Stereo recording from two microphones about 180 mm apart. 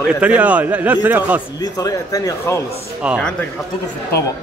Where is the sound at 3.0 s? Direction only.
5° right (ahead or behind).